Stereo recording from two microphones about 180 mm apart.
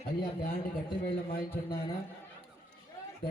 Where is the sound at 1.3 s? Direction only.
55° left (ahead or behind).